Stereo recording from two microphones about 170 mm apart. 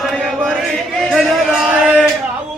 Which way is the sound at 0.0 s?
Centre (ahead or behind).